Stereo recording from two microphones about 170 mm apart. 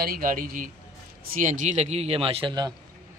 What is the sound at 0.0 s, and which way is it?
A man's voice, 60° right (ahead or behind).